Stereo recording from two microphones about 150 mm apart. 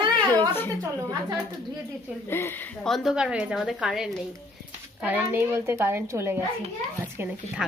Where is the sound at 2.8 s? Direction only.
Centre (ahead or behind).